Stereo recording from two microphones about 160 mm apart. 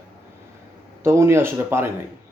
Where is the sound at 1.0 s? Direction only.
15° right (ahead or behind).